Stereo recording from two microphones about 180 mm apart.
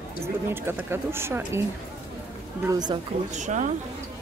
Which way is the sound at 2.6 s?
20° right (ahead or behind).